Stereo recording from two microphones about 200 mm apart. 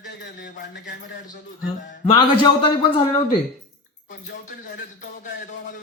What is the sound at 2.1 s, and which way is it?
Speech, 25° left (ahead or behind).